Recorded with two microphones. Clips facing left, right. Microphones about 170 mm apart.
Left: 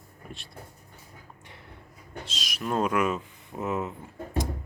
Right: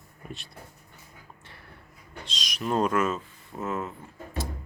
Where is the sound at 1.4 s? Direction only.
20° left (ahead or behind).